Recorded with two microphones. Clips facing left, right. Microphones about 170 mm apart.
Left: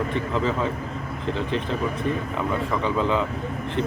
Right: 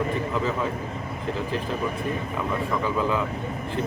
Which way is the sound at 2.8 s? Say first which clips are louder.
Left 2 dB; 25° left (ahead or behind).